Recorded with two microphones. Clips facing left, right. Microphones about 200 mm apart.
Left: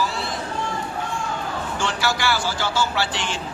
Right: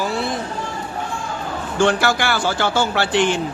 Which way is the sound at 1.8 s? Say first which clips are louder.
Right 8 dB; 55° right (ahead or behind).